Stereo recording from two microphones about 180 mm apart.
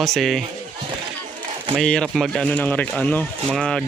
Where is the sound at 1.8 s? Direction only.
5° left (ahead or behind).